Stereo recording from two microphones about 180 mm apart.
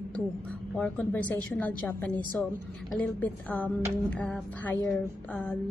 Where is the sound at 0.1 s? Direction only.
5° left (ahead or behind).